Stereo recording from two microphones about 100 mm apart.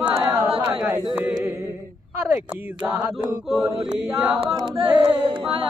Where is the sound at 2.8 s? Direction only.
10° right (ahead or behind).